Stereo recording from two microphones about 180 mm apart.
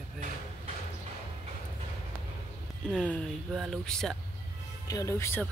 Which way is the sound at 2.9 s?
5° left (ahead or behind).